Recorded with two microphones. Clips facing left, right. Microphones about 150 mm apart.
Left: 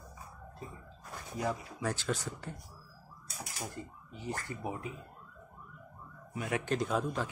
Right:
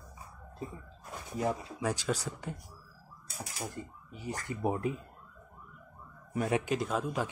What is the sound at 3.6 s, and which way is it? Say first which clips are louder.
Speech: right 2 dB; 10° right (ahead or behind).